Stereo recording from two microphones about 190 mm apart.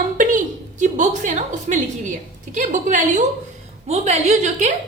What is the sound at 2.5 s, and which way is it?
A woman's voice, 40° right (ahead or behind).